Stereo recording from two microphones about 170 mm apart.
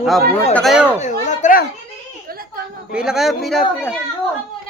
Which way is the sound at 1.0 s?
45° left (ahead or behind).